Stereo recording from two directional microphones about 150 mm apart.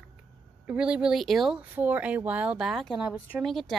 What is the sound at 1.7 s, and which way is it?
A woman's voice, 10° right (ahead or behind).